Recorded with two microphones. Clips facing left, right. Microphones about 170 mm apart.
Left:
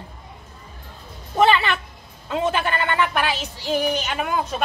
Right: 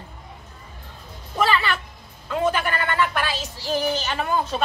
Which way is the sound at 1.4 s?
20° left (ahead or behind).